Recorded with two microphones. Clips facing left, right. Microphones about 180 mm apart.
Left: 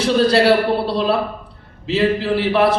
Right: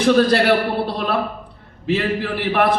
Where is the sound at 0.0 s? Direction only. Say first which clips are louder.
Even; 55° right (ahead or behind).